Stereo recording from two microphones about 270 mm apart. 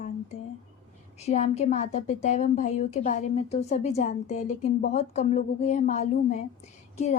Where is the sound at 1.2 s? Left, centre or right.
Left.